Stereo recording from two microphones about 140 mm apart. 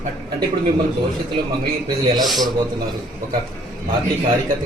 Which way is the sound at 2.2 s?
Centre (ahead or behind).